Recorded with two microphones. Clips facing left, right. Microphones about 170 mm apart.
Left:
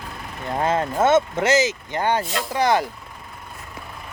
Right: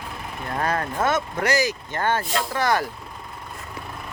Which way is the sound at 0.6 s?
20° left (ahead or behind).